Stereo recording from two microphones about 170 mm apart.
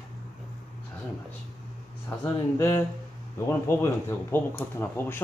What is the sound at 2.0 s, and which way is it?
Speech, 15° left (ahead or behind).